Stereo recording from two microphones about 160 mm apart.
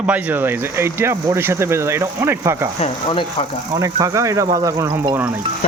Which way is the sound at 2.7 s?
35° left (ahead or behind).